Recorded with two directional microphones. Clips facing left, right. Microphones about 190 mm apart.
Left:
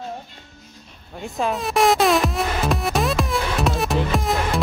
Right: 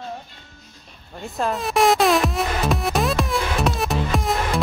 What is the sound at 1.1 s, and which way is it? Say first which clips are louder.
Music: left 1 dB; centre (ahead or behind).